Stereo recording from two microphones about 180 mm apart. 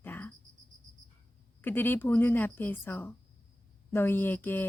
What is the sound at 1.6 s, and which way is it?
Speech, 10° left (ahead or behind).